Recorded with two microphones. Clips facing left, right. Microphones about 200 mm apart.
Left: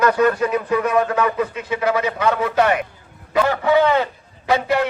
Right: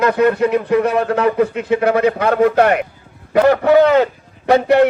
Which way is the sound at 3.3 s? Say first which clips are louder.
Right 6 dB; 45° right (ahead or behind).